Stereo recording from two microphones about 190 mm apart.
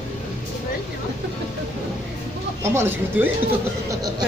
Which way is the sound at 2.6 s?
10° right (ahead or behind).